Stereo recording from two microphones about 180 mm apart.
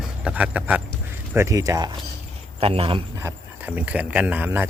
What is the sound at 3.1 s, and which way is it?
Speech, 10° right (ahead or behind).